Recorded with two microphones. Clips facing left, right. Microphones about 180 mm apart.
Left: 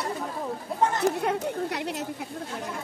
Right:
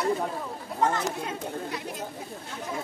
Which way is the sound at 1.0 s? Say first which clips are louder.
Left 7 dB; 65° left (ahead or behind).